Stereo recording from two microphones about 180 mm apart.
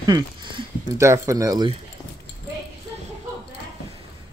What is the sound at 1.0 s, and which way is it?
Speech, 15° right (ahead or behind).